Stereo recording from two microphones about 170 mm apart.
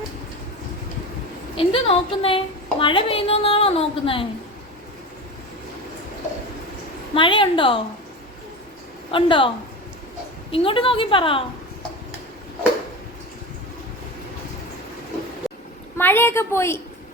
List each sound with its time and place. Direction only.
1.5 s a woman's voice: 35° left (ahead or behind)
7.1 s a woman's voice: 30° left (ahead or behind)
9.1 s a woman's voice: 30° left (ahead or behind)
10.5 s a woman's voice: 30° left (ahead or behind)
16.0 s a woman's voice: 10° left (ahead or behind)